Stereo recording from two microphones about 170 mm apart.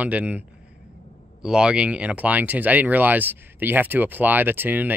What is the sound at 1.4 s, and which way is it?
Speech, 5° right (ahead or behind).